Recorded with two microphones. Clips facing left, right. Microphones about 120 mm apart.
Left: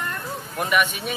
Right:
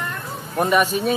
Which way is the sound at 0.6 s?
35° right (ahead or behind).